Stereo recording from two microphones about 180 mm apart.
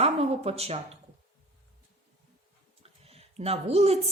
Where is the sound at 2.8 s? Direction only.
35° right (ahead or behind).